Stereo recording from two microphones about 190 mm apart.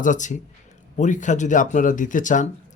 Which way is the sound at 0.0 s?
40° left (ahead or behind).